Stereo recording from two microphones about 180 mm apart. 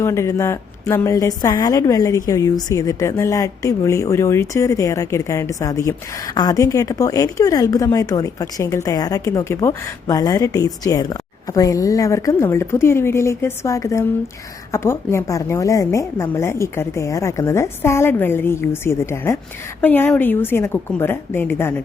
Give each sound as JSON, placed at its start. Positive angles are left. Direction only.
{"t": 0.0, "sound": "a woman's voice", "side_deg": 15}